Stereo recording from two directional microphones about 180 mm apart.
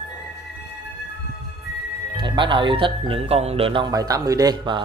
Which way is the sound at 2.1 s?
25° right (ahead or behind).